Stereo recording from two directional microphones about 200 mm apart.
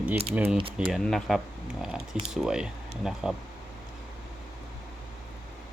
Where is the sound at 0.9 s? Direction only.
Centre (ahead or behind).